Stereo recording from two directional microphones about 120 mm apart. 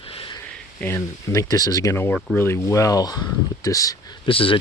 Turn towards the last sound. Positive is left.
turn(degrees=50)  # may be behind; listen again after turning